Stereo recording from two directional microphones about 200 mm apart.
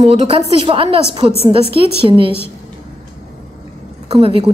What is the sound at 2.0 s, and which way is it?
Speech, 25° right (ahead or behind).